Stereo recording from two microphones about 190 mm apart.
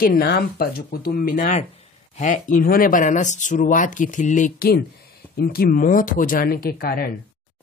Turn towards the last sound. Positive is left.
turn(degrees=50)  # may be behind; listen again after turning